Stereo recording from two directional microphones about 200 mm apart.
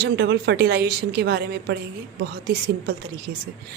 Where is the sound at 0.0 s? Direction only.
55° right (ahead or behind).